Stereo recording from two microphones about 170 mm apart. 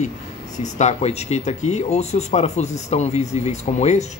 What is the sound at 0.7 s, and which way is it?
Speech, 40° left (ahead or behind).